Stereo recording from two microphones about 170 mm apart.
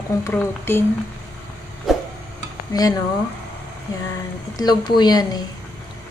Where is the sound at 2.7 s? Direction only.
20° left (ahead or behind).